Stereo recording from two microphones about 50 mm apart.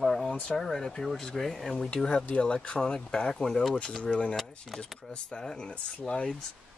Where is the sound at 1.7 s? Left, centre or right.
Left.